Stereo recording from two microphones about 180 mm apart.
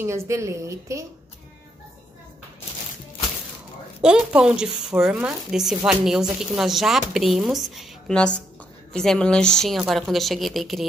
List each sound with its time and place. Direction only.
0.0 s a woman's voice: 15° right (ahead or behind)
4.0 s speech: 5° right (ahead or behind)